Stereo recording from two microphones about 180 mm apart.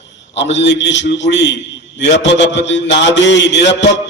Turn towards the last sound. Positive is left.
turn(degrees=80)